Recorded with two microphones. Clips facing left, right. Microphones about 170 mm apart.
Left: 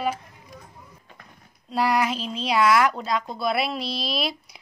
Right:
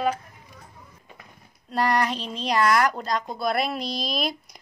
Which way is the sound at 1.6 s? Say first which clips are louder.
Left 1 dB; 5° left (ahead or behind).